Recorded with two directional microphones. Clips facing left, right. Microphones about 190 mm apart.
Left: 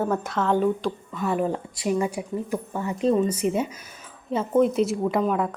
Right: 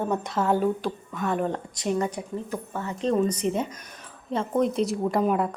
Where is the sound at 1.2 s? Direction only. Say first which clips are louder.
Left 2 dB; 5° left (ahead or behind).